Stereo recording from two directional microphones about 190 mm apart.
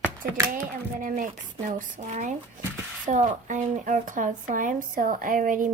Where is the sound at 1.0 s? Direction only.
45° right (ahead or behind).